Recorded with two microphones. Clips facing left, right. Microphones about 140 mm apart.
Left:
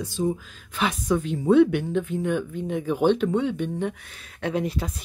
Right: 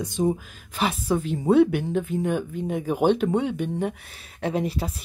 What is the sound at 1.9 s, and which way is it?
Speech, 45° right (ahead or behind).